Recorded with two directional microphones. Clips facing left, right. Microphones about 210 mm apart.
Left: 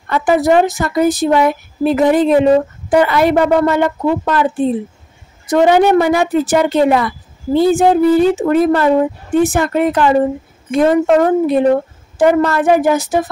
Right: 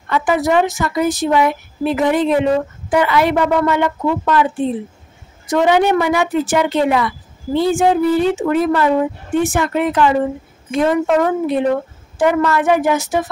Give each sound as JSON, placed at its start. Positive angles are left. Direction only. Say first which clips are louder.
{"t": 0.1, "sound": "a woman's voice", "louder": "left 3 dB", "side_deg": 40}